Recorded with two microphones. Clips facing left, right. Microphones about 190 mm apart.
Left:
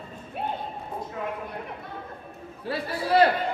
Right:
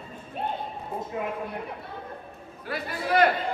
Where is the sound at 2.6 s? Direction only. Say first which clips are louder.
Left 2 dB; 30° left (ahead or behind).